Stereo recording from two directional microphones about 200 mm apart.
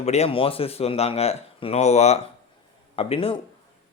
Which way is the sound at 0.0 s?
35° left (ahead or behind).